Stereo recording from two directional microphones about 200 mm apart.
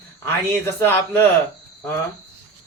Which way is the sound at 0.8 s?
10° left (ahead or behind).